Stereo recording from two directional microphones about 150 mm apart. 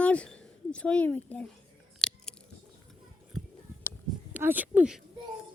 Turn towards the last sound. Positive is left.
turn(degrees=-5)  # may be behind; listen again after turning